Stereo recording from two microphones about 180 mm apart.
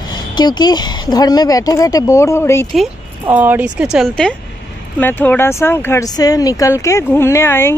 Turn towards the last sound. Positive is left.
turn(degrees=15)  # may be behind; listen again after turning